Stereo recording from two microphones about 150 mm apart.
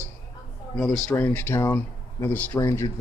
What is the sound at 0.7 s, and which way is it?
Speech, 5° left (ahead or behind).